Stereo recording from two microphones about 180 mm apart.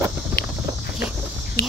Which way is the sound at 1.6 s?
60° left (ahead or behind).